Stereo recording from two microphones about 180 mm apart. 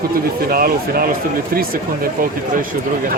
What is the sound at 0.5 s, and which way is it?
Speech, 55° right (ahead or behind).